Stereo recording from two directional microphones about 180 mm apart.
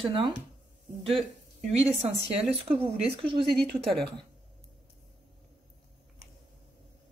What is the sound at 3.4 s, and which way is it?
Speech, centre (ahead or behind).